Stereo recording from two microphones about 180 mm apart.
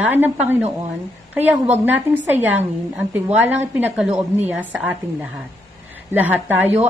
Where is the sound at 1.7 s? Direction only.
10° right (ahead or behind).